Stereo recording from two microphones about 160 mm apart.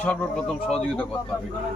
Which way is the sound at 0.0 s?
10° left (ahead or behind).